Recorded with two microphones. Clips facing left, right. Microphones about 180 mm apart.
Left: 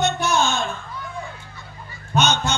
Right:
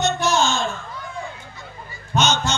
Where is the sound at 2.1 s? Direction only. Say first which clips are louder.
Even; 60° left (ahead or behind).